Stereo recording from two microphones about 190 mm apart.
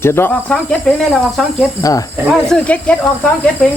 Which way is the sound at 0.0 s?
10° left (ahead or behind).